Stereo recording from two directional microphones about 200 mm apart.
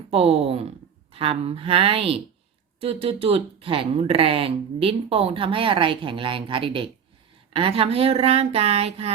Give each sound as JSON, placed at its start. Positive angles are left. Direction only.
{"t": 0.1, "sound": "speech", "side_deg": -30}